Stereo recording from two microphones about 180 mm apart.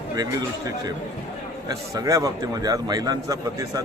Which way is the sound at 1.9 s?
20° right (ahead or behind).